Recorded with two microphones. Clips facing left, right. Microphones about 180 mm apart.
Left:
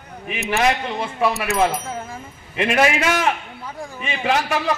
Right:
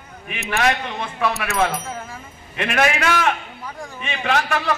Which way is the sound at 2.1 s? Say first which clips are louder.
Left 4 dB; 15° left (ahead or behind).